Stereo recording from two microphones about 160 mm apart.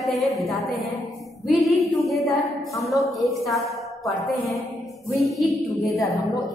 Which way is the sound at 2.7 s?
20° left (ahead or behind).